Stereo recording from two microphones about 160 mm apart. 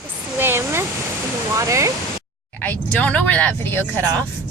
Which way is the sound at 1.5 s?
20° right (ahead or behind).